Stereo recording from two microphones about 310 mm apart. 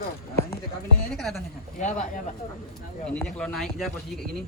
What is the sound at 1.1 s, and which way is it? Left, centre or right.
Speech, centre.